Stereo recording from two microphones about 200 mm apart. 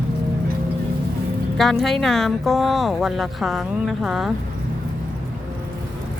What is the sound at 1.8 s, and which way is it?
Speech, centre (ahead or behind).